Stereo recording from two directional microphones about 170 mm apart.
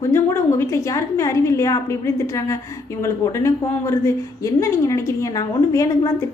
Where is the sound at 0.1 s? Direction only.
15° left (ahead or behind).